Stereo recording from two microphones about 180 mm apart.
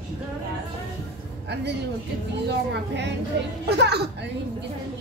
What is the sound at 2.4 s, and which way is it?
Speech, 70° right (ahead or behind).